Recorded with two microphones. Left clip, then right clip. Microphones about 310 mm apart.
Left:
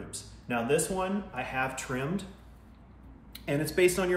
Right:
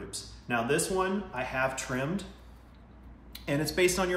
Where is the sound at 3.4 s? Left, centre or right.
Centre.